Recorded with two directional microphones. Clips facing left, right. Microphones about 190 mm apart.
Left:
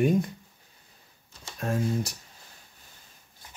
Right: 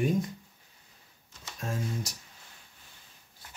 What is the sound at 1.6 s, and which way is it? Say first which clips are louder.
Speech: left 7 dB; 60° left (ahead or behind).